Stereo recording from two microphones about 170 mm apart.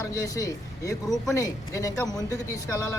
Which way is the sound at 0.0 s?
20° left (ahead or behind).